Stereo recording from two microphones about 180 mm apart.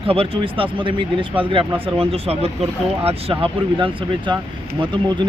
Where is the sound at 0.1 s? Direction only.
30° right (ahead or behind).